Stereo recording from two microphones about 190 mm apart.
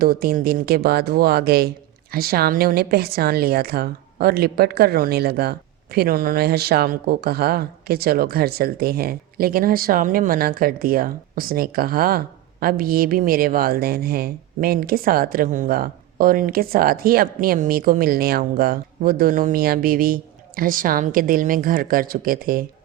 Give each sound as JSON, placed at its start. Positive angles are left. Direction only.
{"t": 0.0, "sound": "a woman's voice", "side_deg": -50}